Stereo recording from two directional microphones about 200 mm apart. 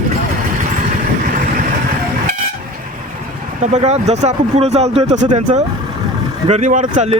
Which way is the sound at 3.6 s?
35° right (ahead or behind).